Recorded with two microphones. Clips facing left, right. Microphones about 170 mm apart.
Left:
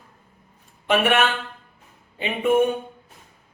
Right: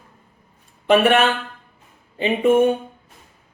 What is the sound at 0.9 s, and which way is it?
A woman's voice, 35° right (ahead or behind).